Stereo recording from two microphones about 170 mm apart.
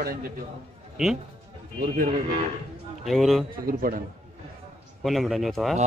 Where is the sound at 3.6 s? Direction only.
60° right (ahead or behind).